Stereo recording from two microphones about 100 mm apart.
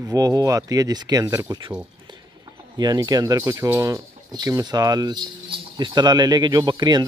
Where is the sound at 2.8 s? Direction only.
40° right (ahead or behind).